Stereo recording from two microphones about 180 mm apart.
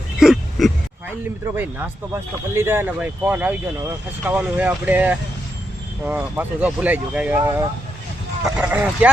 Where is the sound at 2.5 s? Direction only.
15° right (ahead or behind).